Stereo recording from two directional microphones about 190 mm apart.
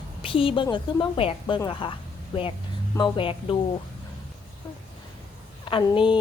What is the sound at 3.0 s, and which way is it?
Speech, 30° left (ahead or behind).